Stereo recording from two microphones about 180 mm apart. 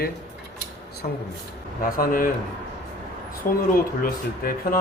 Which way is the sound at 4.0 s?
55° left (ahead or behind).